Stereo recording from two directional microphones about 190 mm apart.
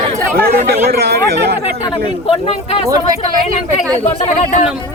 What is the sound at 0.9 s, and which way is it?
Speech, 55° right (ahead or behind).